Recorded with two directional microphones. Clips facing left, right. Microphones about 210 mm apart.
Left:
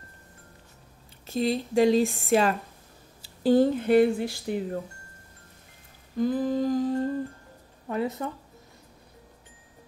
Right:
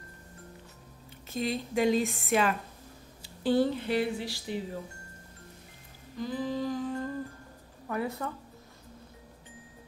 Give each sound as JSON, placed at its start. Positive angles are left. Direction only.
{"t": 1.2, "sound": "speech", "side_deg": 35}
{"t": 6.1, "sound": "humming", "side_deg": 50}
{"t": 7.9, "sound": "speech", "side_deg": 20}